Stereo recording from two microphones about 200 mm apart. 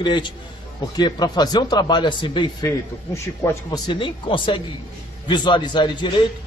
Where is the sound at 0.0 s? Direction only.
25° left (ahead or behind).